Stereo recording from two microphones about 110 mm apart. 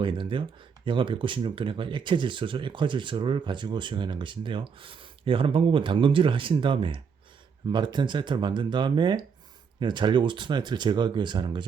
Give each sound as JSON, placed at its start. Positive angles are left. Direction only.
{"t": 0.0, "sound": "speech", "side_deg": -50}